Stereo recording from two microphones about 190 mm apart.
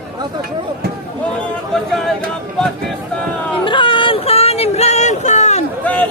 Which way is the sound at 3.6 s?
25° left (ahead or behind).